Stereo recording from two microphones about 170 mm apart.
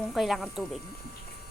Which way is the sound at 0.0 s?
Centre (ahead or behind).